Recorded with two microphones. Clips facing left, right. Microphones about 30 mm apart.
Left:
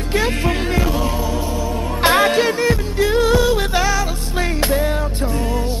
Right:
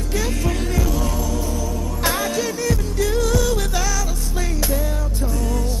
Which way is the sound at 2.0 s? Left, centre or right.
Left.